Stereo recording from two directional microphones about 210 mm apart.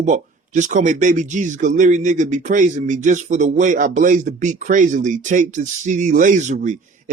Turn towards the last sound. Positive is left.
turn(degrees=-35)  # may be behind; listen again after turning